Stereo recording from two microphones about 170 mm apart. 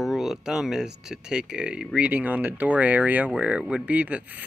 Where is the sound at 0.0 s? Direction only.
Centre (ahead or behind).